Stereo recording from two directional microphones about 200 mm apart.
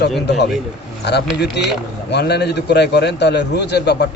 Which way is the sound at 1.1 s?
60° left (ahead or behind).